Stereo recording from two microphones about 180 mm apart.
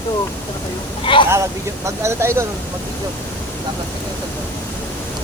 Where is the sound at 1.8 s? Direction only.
15° right (ahead or behind).